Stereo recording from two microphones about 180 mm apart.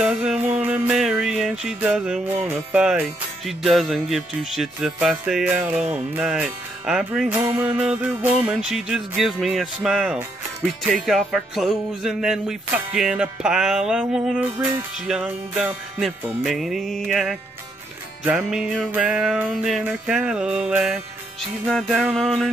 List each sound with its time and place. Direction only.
0.0 s music: 5° right (ahead or behind)